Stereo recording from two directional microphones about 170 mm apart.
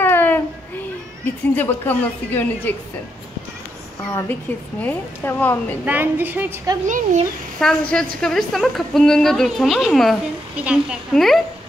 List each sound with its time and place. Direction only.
0.0 s a sound: 10° left (ahead or behind)
1.2 s speech: 10° left (ahead or behind)
4.8 s speech: 10° left (ahead or behind)
5.9 s a woman's voice: 10° right (ahead or behind)
6.9 s speech: 50° right (ahead or behind)
7.6 s a woman's voice: 5° left (ahead or behind)